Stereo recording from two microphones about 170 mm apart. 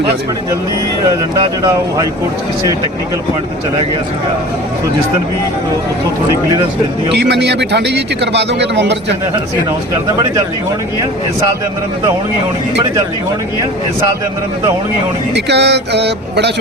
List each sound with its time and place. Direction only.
1.0 s speech: 20° right (ahead or behind)
7.1 s speech: 80° right
15.4 s speech: 85° right